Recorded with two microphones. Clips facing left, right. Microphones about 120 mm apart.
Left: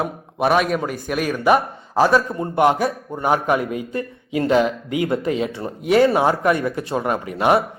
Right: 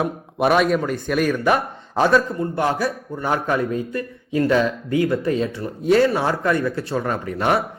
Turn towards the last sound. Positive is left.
turn(degrees=10)  # may be behind; listen again after turning